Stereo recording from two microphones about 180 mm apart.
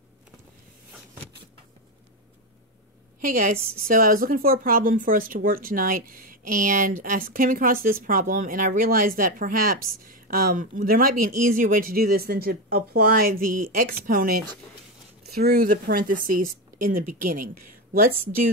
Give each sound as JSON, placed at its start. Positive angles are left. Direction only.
{"t": 3.2, "sound": "a woman's voice", "side_deg": -45}